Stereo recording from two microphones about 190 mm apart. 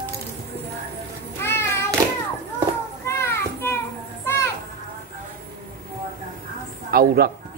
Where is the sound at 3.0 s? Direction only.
15° left (ahead or behind).